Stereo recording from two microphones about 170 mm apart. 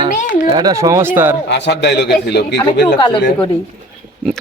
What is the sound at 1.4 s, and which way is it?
A man's voice, 85° left.